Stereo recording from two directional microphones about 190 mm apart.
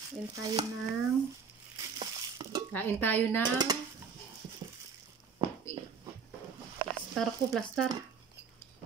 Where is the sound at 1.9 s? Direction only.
20° right (ahead or behind).